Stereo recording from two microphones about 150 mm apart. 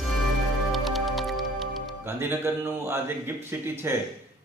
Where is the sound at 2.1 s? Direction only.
15° right (ahead or behind).